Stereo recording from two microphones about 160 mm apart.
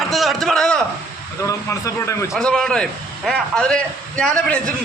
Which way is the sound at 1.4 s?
20° left (ahead or behind).